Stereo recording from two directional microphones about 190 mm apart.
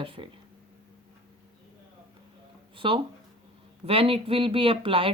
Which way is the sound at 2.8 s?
25° right (ahead or behind).